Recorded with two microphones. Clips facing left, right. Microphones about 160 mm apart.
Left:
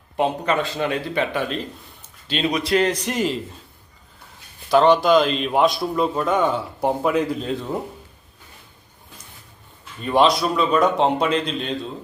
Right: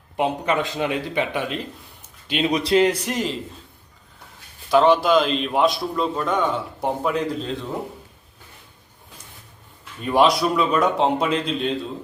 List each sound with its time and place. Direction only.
0.2 s speech: 15° right (ahead or behind)
2.0 s a sound: 15° right (ahead or behind)
2.5 s speech: 30° right (ahead or behind)
2.8 s a man's voice: 5° right (ahead or behind)
4.7 s a man's voice: centre (ahead or behind)
10.1 s a man's voice: 10° right (ahead or behind)